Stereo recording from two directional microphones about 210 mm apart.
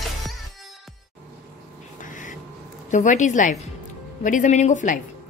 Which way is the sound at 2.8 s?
35° left (ahead or behind).